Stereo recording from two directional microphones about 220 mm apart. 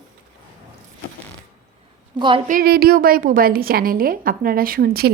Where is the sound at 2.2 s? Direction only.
20° right (ahead or behind).